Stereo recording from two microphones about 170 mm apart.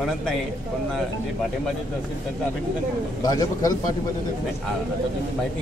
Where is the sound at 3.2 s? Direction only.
20° left (ahead or behind).